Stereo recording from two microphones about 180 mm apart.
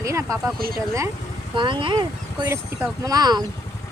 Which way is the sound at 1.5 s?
25° right (ahead or behind).